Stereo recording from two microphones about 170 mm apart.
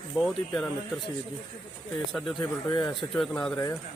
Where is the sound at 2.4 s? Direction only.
20° left (ahead or behind).